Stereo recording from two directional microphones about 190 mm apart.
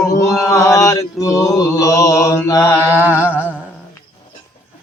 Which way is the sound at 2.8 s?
10° right (ahead or behind).